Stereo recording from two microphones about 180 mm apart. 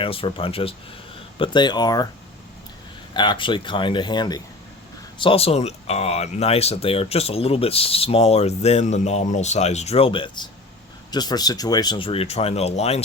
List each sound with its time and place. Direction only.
0.0 s speech: 30° left (ahead or behind)
3.2 s speech: 25° left (ahead or behind)